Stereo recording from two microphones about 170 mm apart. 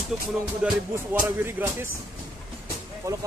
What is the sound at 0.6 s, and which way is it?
Speech, 10° right (ahead or behind).